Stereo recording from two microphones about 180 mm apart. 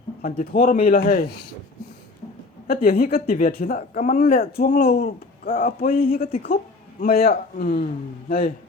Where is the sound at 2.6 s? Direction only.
55° left (ahead or behind).